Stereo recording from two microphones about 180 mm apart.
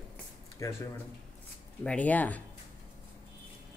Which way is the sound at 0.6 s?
15° left (ahead or behind).